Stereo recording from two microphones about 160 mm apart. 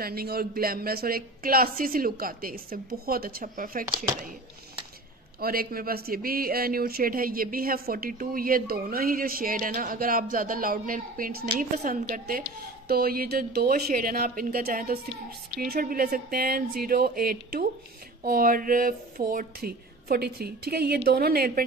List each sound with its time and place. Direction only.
0.0 s a woman's voice: 70° right (ahead or behind)
5.4 s speech: 65° right (ahead or behind)
11.8 s a woman's voice: 55° right (ahead or behind); by 21.6 s 70° right (ahead or behind)